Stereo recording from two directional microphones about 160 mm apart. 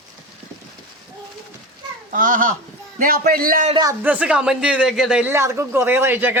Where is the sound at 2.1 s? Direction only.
60° right (ahead or behind).